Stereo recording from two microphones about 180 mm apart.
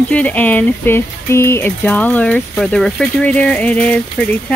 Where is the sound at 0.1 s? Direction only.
10° left (ahead or behind).